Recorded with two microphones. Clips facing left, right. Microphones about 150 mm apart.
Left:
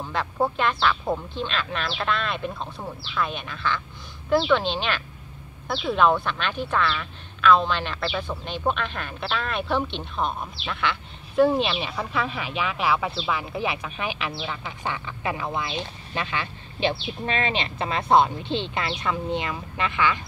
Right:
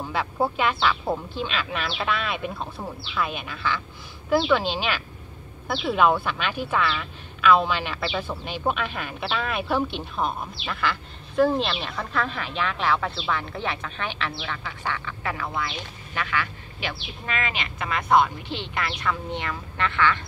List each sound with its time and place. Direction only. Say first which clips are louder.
0.0 s a woman's voice: even; 5° right (ahead or behind); by 20.2 s 15° left (ahead or behind)